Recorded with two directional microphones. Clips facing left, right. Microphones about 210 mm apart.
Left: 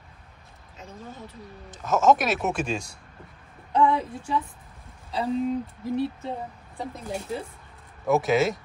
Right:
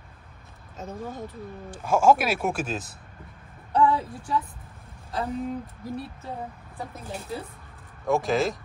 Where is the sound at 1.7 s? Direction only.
10° right (ahead or behind).